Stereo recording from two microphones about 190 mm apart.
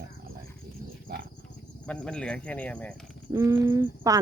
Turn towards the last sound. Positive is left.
turn(degrees=-15)  # may be behind; listen again after turning